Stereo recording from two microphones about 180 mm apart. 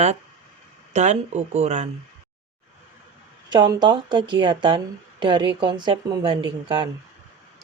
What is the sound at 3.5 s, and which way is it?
Speech, 25° right (ahead or behind).